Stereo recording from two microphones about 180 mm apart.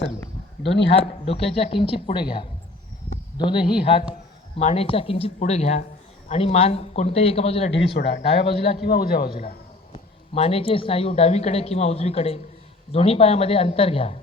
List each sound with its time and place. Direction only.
0.9 s a woman's voice: 30° left (ahead or behind)
7.9 s a man's voice: 65° left (ahead or behind)
9.9 s a woman's voice: 35° left (ahead or behind)